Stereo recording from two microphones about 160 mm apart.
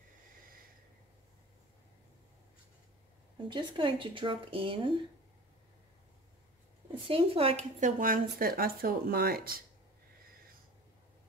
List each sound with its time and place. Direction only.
3.3 s speech: 30° right (ahead or behind)
7.1 s speech: 35° right (ahead or behind)
8.0 s speech: 60° right (ahead or behind)